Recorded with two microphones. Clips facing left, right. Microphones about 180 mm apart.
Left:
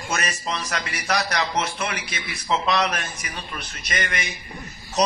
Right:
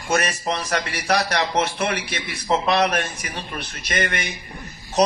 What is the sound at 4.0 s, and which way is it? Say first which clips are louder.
Speech: right 4 dB; 55° right (ahead or behind).